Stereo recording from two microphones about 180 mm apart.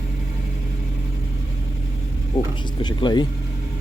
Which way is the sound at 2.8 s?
25° left (ahead or behind).